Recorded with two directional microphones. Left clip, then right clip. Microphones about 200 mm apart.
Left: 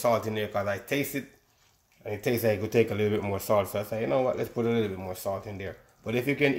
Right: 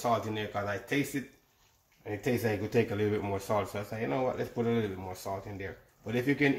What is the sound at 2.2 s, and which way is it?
Speech, 45° left (ahead or behind).